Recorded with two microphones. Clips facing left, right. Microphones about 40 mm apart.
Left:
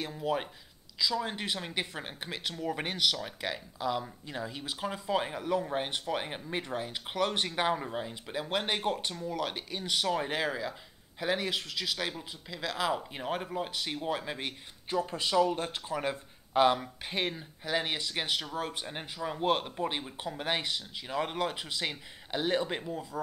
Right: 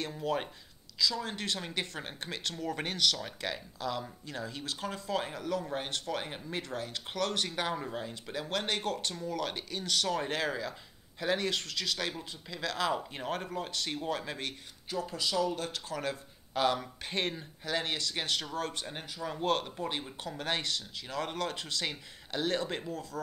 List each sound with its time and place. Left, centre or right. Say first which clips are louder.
0.0 s speech: left 1 dB; centre
0.9 s speech: left 1 dB; centre
14.9 s speech: left 3 dB; left
16.8 s speech: left 1 dB; centre